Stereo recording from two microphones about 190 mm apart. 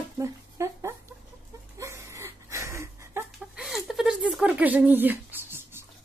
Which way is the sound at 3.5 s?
Centre (ahead or behind).